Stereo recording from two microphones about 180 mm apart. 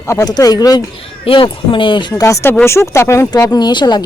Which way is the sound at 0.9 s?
30° left (ahead or behind).